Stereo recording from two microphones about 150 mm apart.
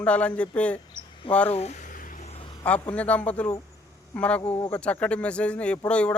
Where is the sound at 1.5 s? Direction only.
50° left (ahead or behind).